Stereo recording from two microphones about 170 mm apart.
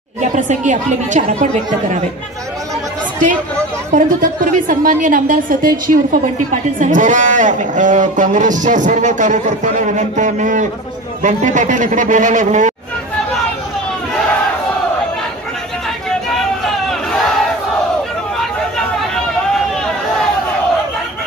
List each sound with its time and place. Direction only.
0.4 s a woman's voice: 45° right (ahead or behind)
3.9 s a woman's voice: 50° right (ahead or behind)